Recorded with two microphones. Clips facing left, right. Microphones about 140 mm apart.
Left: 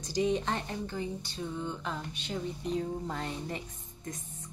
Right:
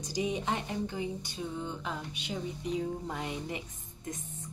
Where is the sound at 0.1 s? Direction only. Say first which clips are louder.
Left 3 dB; 10° right (ahead or behind).